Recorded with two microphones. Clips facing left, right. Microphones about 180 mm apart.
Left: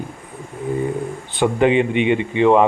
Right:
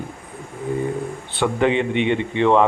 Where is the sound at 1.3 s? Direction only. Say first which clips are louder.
Left 3 dB; 15° left (ahead or behind).